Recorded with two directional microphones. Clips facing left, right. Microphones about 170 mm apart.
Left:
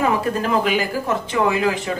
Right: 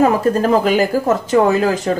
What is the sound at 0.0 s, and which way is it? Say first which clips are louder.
Speech: right 6 dB; 40° right (ahead or behind).